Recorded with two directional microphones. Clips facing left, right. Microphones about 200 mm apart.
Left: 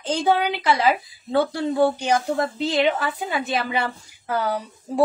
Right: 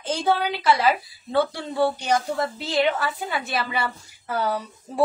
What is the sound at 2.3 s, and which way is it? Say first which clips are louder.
A woman's voice: left 2 dB; 20° left (ahead or behind).